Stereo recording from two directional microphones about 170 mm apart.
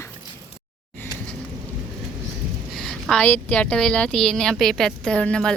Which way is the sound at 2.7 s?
5° left (ahead or behind).